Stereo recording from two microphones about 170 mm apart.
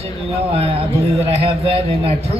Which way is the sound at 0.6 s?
35° right (ahead or behind).